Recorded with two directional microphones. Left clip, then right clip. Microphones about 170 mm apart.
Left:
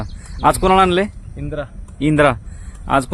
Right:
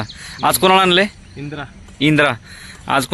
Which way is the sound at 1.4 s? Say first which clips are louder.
Left 3 dB; 60° left (ahead or behind).